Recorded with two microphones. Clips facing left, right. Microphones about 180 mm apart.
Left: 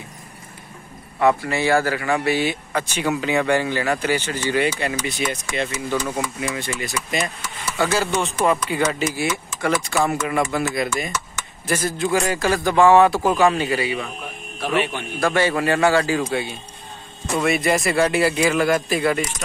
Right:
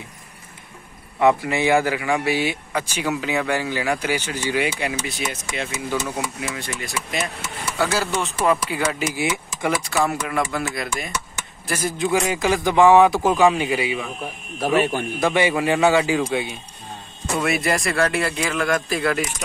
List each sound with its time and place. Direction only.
1.2 s speech: 20° right (ahead or behind)
9.8 s speech: centre (ahead or behind)
11.6 s speech: 10° right (ahead or behind)
14.6 s speech: 40° right (ahead or behind)
15.1 s speech: 15° right (ahead or behind)
17.4 s speech: centre (ahead or behind)